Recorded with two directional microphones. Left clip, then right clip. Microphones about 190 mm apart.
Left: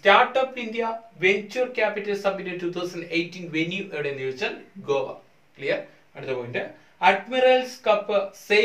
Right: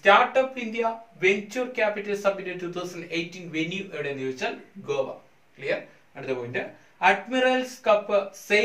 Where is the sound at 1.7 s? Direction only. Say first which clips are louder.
Left 1 dB; 15° left (ahead or behind).